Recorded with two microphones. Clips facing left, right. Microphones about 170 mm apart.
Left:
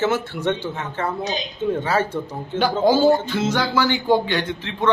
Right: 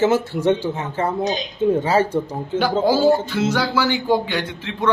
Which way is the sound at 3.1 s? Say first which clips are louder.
Right 1 dB; 10° right (ahead or behind).